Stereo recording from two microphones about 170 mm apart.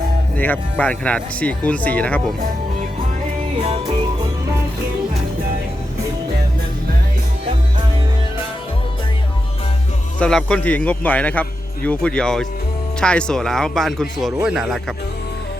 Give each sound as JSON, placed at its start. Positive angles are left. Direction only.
{"t": 0.3, "sound": "a man's voice", "side_deg": 10}
{"t": 3.6, "sound": "music", "side_deg": -35}
{"t": 10.2, "sound": "a man's voice", "side_deg": 5}